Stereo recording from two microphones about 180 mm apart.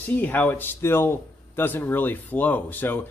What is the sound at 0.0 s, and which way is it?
A man's voice, 10° left (ahead or behind).